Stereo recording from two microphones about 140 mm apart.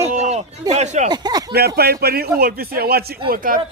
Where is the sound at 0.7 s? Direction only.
50° right (ahead or behind).